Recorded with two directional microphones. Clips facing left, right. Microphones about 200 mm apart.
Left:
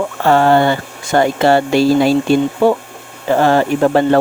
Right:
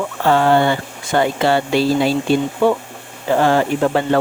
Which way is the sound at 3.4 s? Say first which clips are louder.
Left 3 dB; 45° left (ahead or behind).